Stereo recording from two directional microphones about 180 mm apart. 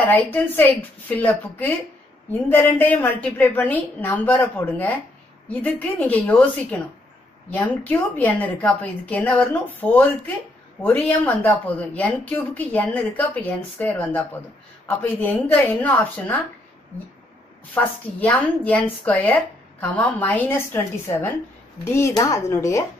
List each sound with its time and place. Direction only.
0.1 s a woman's voice: 10° left (ahead or behind)
17.7 s a woman's voice: 10° left (ahead or behind)